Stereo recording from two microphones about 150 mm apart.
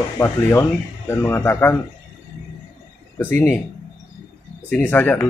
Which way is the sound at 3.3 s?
15° left (ahead or behind).